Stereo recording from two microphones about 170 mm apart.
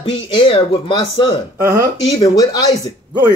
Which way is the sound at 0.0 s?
30° left (ahead or behind).